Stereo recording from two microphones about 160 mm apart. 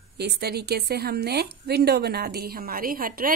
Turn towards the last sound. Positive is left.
turn(degrees=-65)  # may be behind; listen again after turning